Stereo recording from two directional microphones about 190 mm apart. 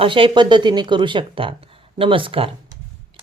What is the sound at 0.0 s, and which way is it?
Speech, 25° right (ahead or behind).